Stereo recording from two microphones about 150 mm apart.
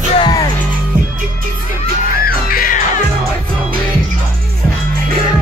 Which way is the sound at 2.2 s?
70° left (ahead or behind).